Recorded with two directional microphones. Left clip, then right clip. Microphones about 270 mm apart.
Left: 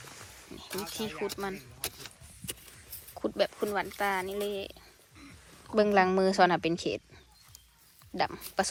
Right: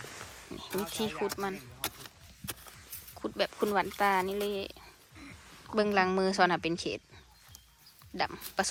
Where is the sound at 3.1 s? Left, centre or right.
Centre.